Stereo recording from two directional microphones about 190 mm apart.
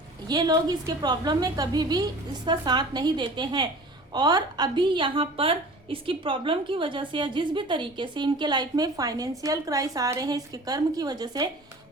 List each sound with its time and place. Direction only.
0.3 s a woman's voice: 20° right (ahead or behind)